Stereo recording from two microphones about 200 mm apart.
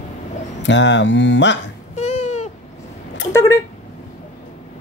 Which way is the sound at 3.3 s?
15° left (ahead or behind).